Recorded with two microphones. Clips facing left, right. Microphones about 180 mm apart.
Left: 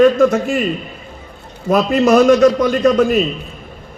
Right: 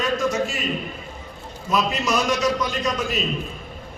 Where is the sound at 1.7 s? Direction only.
55° left (ahead or behind).